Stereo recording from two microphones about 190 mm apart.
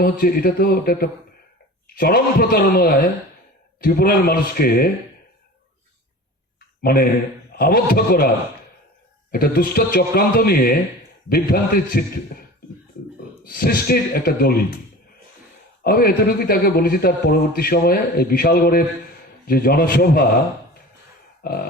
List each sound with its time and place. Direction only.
0.0 s a man's voice: 50° left (ahead or behind)
6.8 s a man's voice: 50° left (ahead or behind)
9.3 s a man's voice: 50° left (ahead or behind)
13.4 s a man's voice: 50° left (ahead or behind)
15.8 s a man's voice: 50° left (ahead or behind)